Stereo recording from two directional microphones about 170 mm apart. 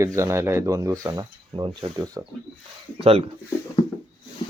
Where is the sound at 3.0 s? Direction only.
35° right (ahead or behind).